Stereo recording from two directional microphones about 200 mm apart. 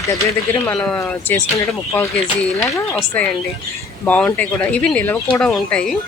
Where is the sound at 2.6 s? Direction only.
15° left (ahead or behind).